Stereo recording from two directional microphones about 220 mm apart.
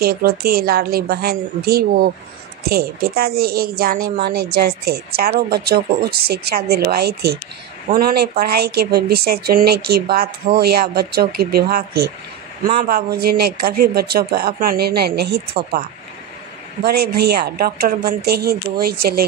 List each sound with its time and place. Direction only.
0.0 s a woman's voice: 45° right (ahead or behind)
16.8 s a woman's voice: 45° right (ahead or behind)